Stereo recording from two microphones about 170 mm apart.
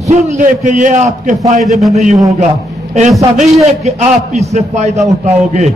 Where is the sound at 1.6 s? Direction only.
Centre (ahead or behind).